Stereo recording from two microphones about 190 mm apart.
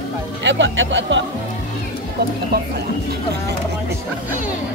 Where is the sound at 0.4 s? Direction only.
70° right (ahead or behind).